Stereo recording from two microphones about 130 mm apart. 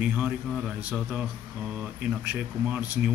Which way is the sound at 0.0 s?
10° right (ahead or behind).